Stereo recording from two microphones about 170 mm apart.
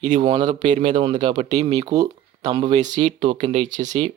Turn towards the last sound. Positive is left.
turn(degrees=-45)  # may be behind; listen again after turning